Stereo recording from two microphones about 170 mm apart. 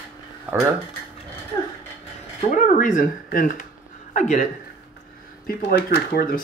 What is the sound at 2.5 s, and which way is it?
Speech, 50° left (ahead or behind).